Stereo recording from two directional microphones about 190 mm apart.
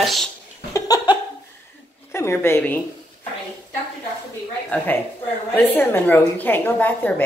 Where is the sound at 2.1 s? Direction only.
15° left (ahead or behind).